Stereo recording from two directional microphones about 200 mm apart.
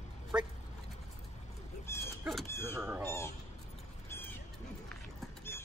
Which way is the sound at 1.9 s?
15° left (ahead or behind).